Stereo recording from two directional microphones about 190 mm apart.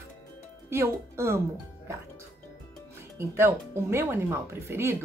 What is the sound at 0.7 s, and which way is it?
Speech, 15° right (ahead or behind).